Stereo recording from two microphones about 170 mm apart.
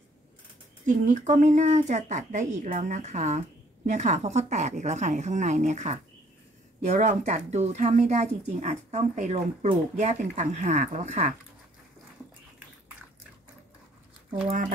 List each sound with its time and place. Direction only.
0.8 s speech: 45° right (ahead or behind)